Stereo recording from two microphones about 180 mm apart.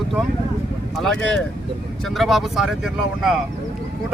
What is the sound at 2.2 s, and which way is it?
Speech, centre (ahead or behind).